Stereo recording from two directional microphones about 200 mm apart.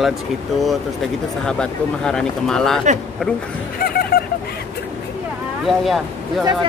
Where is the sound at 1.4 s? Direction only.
5° left (ahead or behind).